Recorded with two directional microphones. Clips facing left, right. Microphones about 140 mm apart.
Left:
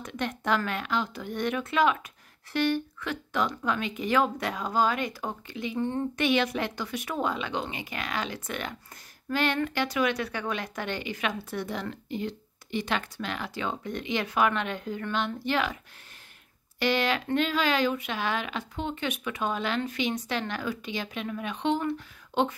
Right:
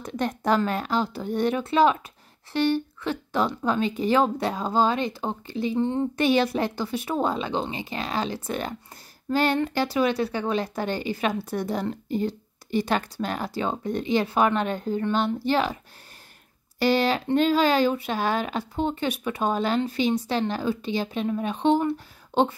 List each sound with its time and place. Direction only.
0.0 s a woman's voice: 35° right (ahead or behind)
5.8 s speech: 20° right (ahead or behind)
6.1 s a woman's voice: 35° right (ahead or behind)
16.8 s a woman's voice: 35° right (ahead or behind)